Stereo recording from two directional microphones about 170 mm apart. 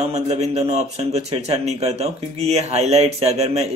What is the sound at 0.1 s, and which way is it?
Speech, 40° right (ahead or behind).